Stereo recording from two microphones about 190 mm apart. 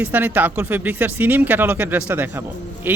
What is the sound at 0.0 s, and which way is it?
Speech, 10° right (ahead or behind).